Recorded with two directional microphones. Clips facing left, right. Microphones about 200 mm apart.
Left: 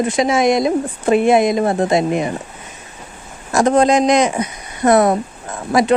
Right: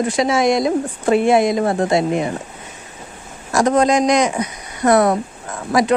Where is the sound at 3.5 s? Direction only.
25° left (ahead or behind).